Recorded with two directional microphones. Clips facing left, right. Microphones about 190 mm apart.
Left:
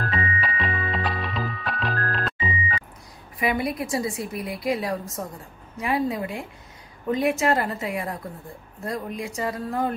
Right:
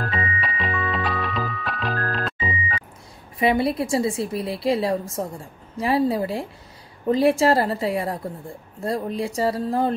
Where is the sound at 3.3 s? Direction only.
30° right (ahead or behind).